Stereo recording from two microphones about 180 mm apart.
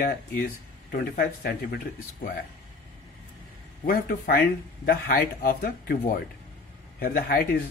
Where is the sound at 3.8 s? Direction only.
55° left (ahead or behind).